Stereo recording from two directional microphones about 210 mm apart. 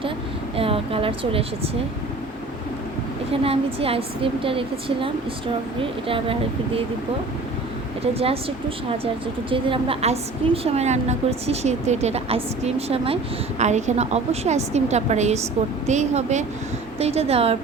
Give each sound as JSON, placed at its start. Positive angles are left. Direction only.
{"t": 0.5, "sound": "speech", "side_deg": -25}
{"t": 3.4, "sound": "a woman's voice", "side_deg": -25}
{"t": 8.2, "sound": "a woman's voice", "side_deg": -25}